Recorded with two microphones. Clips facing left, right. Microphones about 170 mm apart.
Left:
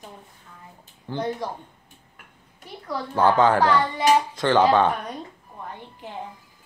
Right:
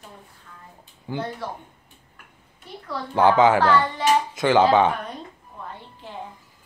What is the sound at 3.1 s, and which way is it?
Speech, 10° right (ahead or behind).